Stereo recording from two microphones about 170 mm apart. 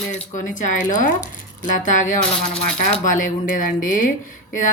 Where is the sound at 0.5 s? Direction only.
50° left (ahead or behind).